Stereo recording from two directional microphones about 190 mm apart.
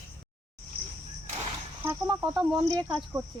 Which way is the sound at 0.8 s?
30° right (ahead or behind).